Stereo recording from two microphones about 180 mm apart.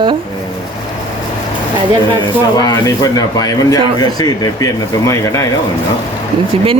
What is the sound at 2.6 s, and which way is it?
Speech, 20° left (ahead or behind).